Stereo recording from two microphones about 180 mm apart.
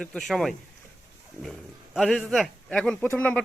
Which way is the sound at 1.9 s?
Centre (ahead or behind).